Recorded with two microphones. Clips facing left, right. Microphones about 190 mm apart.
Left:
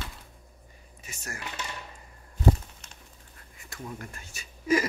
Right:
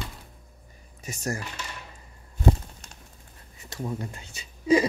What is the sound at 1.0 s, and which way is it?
Speech, 40° right (ahead or behind).